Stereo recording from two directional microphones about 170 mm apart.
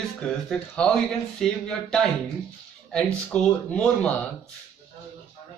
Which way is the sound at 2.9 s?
5° left (ahead or behind).